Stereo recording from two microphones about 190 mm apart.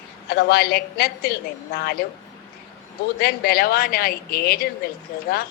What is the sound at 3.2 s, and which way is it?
Speech, 55° left (ahead or behind).